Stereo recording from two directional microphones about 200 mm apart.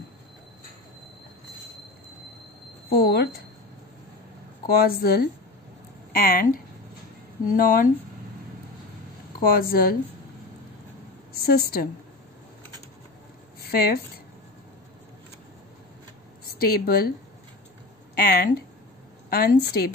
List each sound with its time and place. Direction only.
2.9 s speech: 55° left (ahead or behind)
4.6 s speech: 50° left (ahead or behind)
9.4 s speech: 45° left (ahead or behind)
11.4 s speech: 50° left (ahead or behind)
13.7 s speech: 50° left (ahead or behind)
16.5 s speech: 50° left (ahead or behind)
18.1 s speech: 50° left (ahead or behind)